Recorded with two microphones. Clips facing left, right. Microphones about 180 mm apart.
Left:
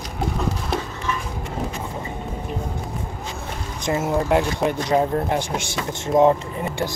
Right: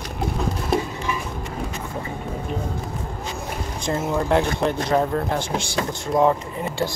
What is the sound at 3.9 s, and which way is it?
Speech, 10° left (ahead or behind).